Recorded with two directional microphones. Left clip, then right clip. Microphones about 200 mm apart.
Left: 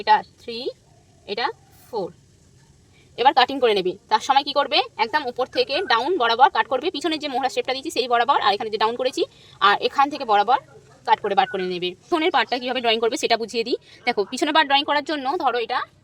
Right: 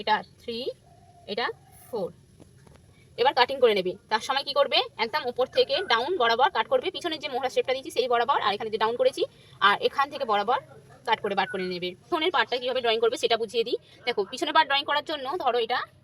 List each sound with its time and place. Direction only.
0.2 s a woman's voice: 45° left (ahead or behind)
3.2 s a woman's voice: 50° left (ahead or behind)